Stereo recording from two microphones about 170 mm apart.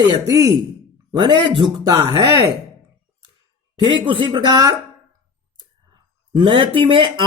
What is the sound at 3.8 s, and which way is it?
Speech, 30° right (ahead or behind).